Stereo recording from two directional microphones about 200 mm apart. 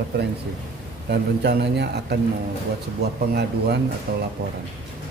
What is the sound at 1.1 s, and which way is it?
A man's voice, 55° right (ahead or behind).